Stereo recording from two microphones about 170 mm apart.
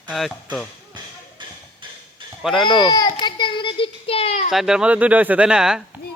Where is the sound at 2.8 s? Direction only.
25° left (ahead or behind).